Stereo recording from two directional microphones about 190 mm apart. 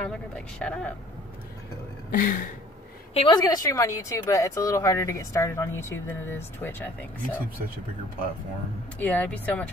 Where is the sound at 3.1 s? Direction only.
25° left (ahead or behind); by 6.9 s 10° left (ahead or behind).